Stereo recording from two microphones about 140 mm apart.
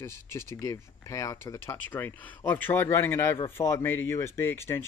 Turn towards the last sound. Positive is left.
turn(degrees=15)  # may be behind; listen again after turning